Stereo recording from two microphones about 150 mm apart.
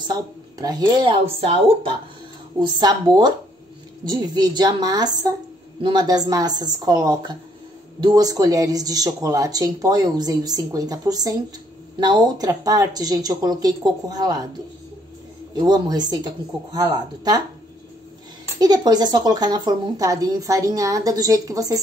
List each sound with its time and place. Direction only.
0.1 s speech: 25° right (ahead or behind)
2.6 s speech: 30° right (ahead or behind)
15.5 s speech: 30° right (ahead or behind)
18.6 s speech: 25° right (ahead or behind)